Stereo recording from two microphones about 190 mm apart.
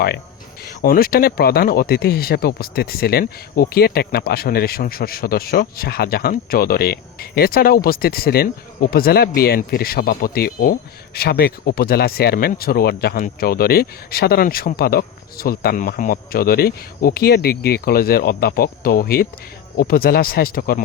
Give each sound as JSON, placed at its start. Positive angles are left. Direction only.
{"t": 0.6, "sound": "speech", "side_deg": 50}